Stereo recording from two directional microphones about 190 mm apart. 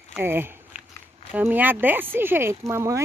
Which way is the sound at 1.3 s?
10° right (ahead or behind).